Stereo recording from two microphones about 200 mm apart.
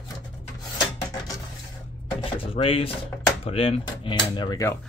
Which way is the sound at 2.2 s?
30° left (ahead or behind).